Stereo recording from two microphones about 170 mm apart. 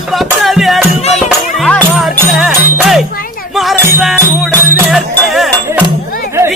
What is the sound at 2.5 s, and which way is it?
Jingle bell, 5° right (ahead or behind).